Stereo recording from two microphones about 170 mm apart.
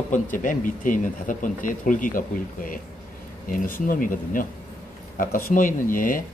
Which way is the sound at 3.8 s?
55° left (ahead or behind).